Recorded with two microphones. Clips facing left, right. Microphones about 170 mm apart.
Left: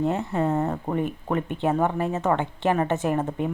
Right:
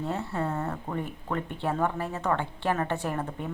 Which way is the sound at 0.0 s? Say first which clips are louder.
Left 6 dB; 20° left (ahead or behind).